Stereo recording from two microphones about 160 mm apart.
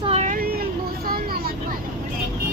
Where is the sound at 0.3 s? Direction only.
65° right (ahead or behind).